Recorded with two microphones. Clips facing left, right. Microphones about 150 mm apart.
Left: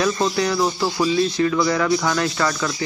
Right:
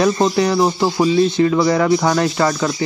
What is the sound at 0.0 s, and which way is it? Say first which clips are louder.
Speech: right 5 dB; 30° right (ahead or behind).